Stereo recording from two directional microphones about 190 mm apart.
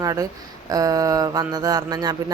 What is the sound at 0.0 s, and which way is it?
Speech, 20° right (ahead or behind).